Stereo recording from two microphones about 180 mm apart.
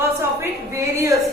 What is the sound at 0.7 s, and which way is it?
Speech, 15° right (ahead or behind).